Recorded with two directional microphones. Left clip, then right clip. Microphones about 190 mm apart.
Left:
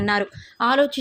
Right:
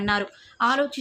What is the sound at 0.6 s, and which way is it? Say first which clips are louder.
Speech: left 4 dB; 35° left (ahead or behind).